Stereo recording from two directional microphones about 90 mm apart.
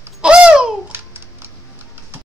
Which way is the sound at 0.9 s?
25° right (ahead or behind).